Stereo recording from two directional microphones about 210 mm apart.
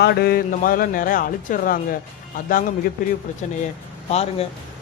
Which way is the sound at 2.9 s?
40° left (ahead or behind).